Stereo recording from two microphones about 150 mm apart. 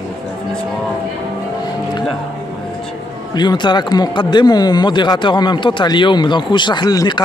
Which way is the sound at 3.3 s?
30° left (ahead or behind).